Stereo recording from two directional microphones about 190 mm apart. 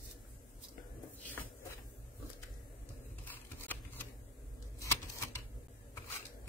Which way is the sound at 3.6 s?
10° left (ahead or behind).